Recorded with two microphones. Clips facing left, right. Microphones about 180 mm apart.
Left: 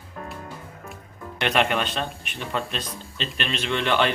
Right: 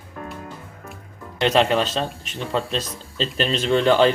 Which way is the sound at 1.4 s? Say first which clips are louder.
Right 5 dB; 25° right (ahead or behind).